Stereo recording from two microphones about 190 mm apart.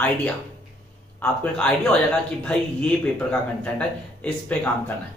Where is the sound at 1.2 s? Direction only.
5° left (ahead or behind).